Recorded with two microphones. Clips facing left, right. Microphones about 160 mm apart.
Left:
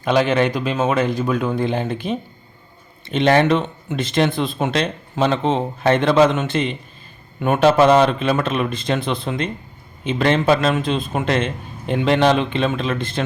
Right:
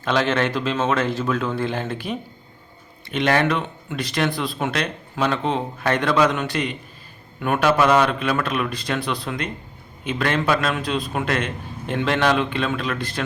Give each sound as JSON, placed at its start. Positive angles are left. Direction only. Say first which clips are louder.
{"t": 0.0, "sound": "speech", "louder": "left 4 dB", "side_deg": 15}